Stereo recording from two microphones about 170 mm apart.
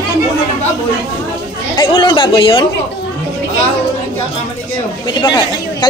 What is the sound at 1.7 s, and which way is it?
Speech, 25° left (ahead or behind).